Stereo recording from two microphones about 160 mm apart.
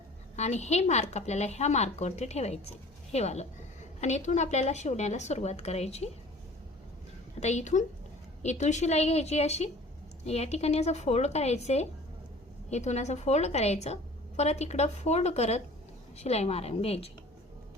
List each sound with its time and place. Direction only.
0.3 s a woman's voice: 45° left (ahead or behind)
7.3 s a woman's voice: 45° left (ahead or behind)